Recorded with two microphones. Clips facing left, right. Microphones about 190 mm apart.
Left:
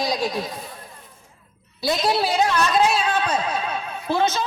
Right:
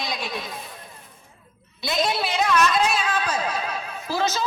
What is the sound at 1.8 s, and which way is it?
Speech, 35° left (ahead or behind).